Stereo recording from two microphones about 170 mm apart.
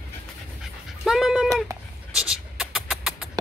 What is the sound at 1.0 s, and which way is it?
Dog, centre (ahead or behind).